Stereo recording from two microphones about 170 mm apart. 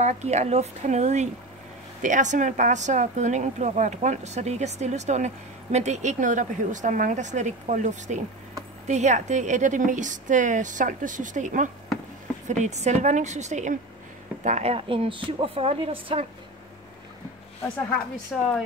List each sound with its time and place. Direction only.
0.0 s a woman's voice: 40° right (ahead or behind)
18.3 s speech: centre (ahead or behind)